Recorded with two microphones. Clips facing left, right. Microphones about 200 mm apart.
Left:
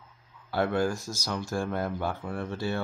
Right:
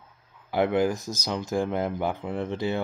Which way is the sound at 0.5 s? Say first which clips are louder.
Right 4 dB; 20° right (ahead or behind).